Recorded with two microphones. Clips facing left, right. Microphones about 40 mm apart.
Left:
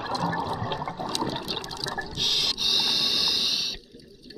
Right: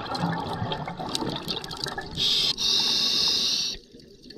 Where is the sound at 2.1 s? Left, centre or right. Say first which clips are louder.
Right 2 dB; centre.